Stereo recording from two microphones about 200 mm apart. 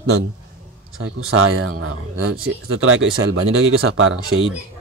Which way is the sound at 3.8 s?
90° right.